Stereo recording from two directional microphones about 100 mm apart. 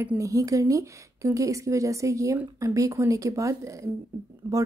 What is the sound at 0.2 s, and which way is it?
Speech, 35° right (ahead or behind).